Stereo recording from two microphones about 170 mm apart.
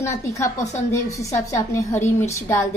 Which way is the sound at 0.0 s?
15° left (ahead or behind).